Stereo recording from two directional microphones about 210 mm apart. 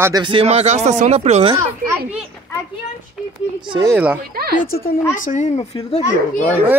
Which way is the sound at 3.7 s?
15° right (ahead or behind).